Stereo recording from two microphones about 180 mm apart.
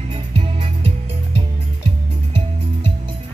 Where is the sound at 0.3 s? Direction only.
30° right (ahead or behind).